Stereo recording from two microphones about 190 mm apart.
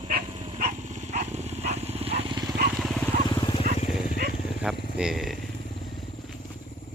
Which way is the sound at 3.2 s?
25° left (ahead or behind).